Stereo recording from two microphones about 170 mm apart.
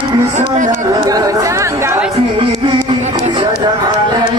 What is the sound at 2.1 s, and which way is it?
Music, 30° right (ahead or behind).